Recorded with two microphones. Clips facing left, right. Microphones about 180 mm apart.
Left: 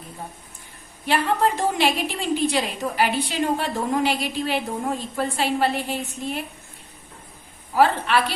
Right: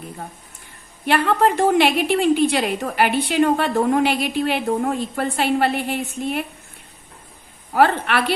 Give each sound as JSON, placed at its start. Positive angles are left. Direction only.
{"t": 1.0, "sound": "a woman's voice", "side_deg": -60}
{"t": 7.7, "sound": "a woman's voice", "side_deg": -60}